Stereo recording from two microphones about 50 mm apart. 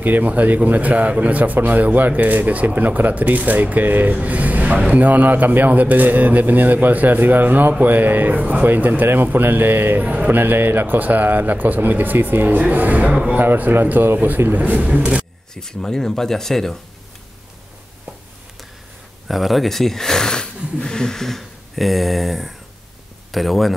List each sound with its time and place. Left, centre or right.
0.0 s a man's voice: right
10.0 s a man's voice: right
10.4 s a man's voice: right
14.9 s a sound: right
15.5 s speech: centre
19.2 s speech: centre